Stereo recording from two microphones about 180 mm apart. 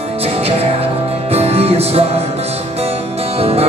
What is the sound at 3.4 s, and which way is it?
Music, 35° right (ahead or behind).